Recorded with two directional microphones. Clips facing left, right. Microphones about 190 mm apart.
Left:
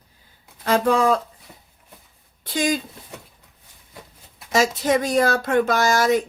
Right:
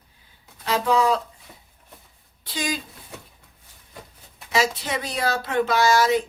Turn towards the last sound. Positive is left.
turn(degrees=45)  # may be behind; listen again after turning